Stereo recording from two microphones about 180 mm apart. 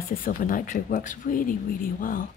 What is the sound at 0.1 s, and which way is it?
Speech, 50° left (ahead or behind).